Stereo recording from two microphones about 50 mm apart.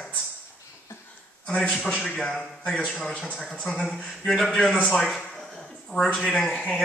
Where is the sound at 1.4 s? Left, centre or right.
Left; by 5.1 s centre.